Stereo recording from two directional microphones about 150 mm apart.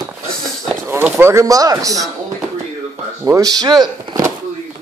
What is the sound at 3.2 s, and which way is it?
Speech, 20° right (ahead or behind).